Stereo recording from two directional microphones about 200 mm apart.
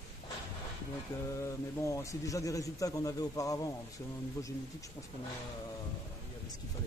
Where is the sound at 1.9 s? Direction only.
15° left (ahead or behind).